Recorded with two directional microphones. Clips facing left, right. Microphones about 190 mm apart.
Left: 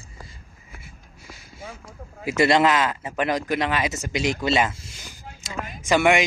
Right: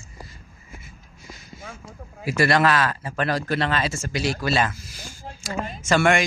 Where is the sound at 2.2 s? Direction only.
20° left (ahead or behind).